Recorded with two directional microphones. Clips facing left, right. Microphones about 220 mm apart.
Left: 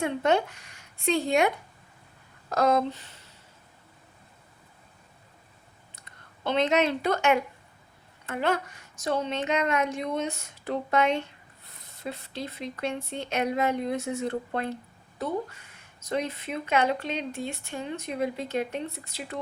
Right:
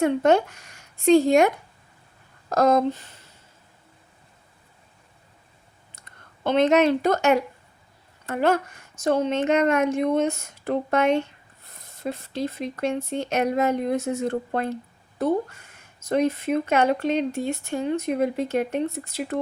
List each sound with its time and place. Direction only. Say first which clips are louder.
0.0 s speech: right 6 dB; 45° right (ahead or behind)
6.4 s speech: right 6 dB; 50° right (ahead or behind)
16.0 s speech: right 8 dB; 45° right (ahead or behind)